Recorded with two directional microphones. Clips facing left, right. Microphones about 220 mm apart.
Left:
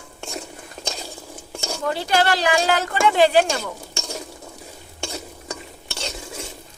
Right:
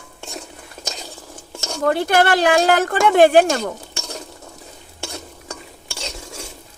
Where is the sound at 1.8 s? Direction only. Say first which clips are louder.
Right 5 dB; 55° right (ahead or behind).